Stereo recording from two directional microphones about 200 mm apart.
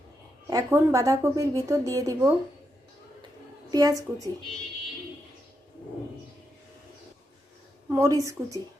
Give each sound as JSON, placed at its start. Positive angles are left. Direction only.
{"t": 0.5, "sound": "a woman's voice", "side_deg": -15}
{"t": 3.7, "sound": "a woman's voice", "side_deg": -20}
{"t": 7.9, "sound": "a woman's voice", "side_deg": -15}